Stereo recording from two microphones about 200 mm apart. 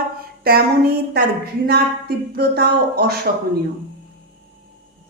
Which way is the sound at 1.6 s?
50° right (ahead or behind).